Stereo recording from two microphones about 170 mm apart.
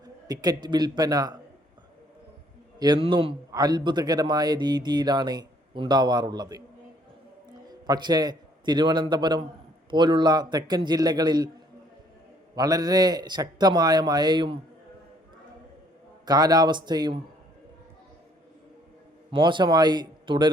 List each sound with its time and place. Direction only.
0.0 s a man's voice: 25° right (ahead or behind)
2.7 s a man's voice: 25° right (ahead or behind)
7.7 s a man's voice: 25° right (ahead or behind)
12.5 s a man's voice: 20° right (ahead or behind)
16.2 s a man's voice: 25° right (ahead or behind)
19.3 s a man's voice: 30° right (ahead or behind)